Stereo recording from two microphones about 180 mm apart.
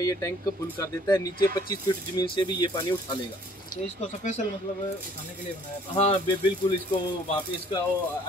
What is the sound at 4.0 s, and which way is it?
Speech, 40° left (ahead or behind).